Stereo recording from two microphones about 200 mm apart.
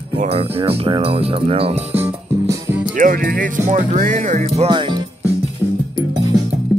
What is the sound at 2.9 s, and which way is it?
Speech, 40° right (ahead or behind).